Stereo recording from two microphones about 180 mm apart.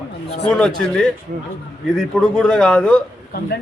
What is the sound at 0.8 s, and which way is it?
A man's voice, 5° left (ahead or behind).